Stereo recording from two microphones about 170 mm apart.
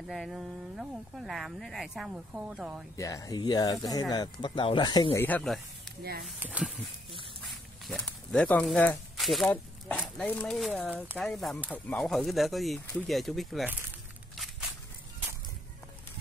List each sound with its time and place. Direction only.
0.1 s speech: centre (ahead or behind)
3.0 s speech: 20° left (ahead or behind)
5.1 s speech: 10° left (ahead or behind)
6.4 s speech: 10° right (ahead or behind)
7.8 s speech: 5° left (ahead or behind)
14.3 s walk: centre (ahead or behind)